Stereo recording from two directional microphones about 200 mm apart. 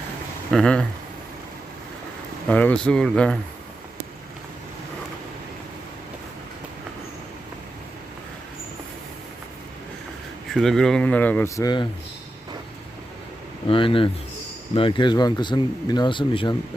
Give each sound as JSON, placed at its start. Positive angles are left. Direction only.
{"t": 0.5, "sound": "speech", "side_deg": 5}
{"t": 2.5, "sound": "speech", "side_deg": 5}
{"t": 10.5, "sound": "speech", "side_deg": 0}
{"t": 13.7, "sound": "speech", "side_deg": 25}